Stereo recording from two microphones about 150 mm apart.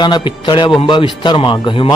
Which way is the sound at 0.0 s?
30° left (ahead or behind).